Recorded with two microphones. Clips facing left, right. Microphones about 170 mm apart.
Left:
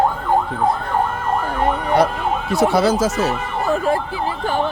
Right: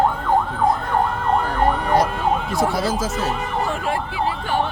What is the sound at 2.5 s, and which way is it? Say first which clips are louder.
Speech: left 5 dB; 70° left (ahead or behind).